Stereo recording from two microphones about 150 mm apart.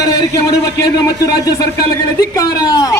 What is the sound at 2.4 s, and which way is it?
Speech, 25° left (ahead or behind).